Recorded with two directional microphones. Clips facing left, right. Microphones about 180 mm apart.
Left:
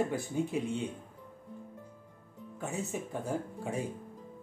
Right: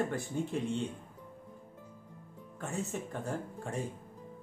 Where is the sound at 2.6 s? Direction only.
Centre (ahead or behind).